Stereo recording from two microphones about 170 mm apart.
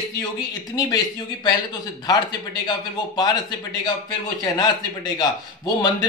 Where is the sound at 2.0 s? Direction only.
25° left (ahead or behind).